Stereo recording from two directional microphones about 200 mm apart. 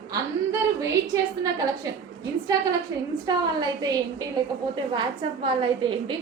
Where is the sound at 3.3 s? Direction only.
20° right (ahead or behind).